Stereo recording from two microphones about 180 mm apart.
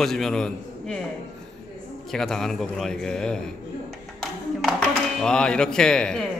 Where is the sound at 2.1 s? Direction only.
Centre (ahead or behind).